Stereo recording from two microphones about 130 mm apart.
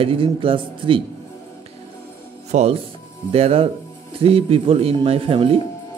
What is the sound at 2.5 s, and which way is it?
Speech, 65° right (ahead or behind).